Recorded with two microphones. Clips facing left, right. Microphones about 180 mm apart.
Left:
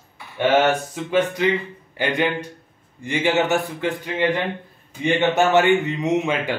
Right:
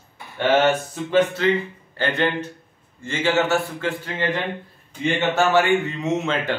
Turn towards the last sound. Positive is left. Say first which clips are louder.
# left 2 dB
turn(degrees=15)  # may be behind; listen again after turning